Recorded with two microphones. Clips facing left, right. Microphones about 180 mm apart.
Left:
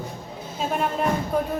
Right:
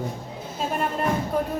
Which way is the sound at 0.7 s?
Centre (ahead or behind).